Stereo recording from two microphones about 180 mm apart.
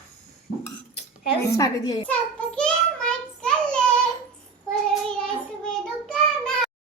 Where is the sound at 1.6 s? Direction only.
20° left (ahead or behind).